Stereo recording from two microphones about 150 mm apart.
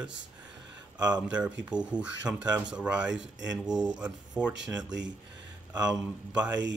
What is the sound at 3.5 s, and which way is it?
Speech, 25° right (ahead or behind).